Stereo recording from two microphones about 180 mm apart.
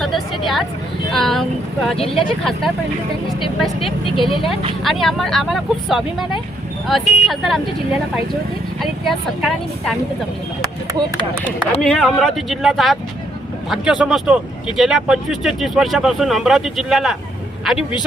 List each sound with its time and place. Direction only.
0.0 s vehicle: centre (ahead or behind)
1.1 s speech: centre (ahead or behind)
3.8 s speech: 30° left (ahead or behind)
4.8 s speech: centre (ahead or behind)
8.8 s speech: centre (ahead or behind)
11.8 s speech: 5° left (ahead or behind)